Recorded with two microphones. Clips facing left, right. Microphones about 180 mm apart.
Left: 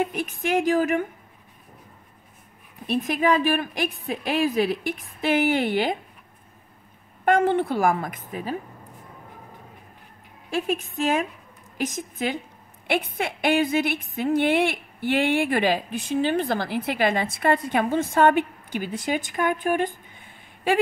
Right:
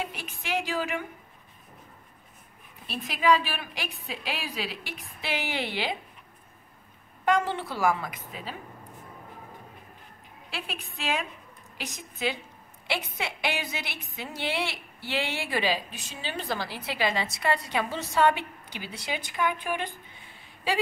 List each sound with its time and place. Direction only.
0.0 s a woman's voice: 50° left (ahead or behind)
2.9 s a woman's voice: 50° left (ahead or behind)
7.2 s a woman's voice: 55° left (ahead or behind)
10.5 s a woman's voice: 45° left (ahead or behind)